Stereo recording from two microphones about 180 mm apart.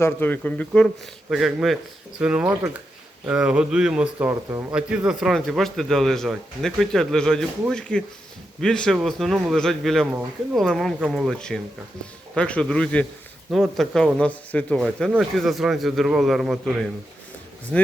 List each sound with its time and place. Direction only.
0.0 s speech: 10° left (ahead or behind)
10.1 s speech: 10° right (ahead or behind)
10.6 s speech: centre (ahead or behind)